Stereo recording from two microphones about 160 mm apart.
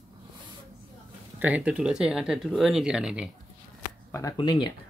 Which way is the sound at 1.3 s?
10° right (ahead or behind).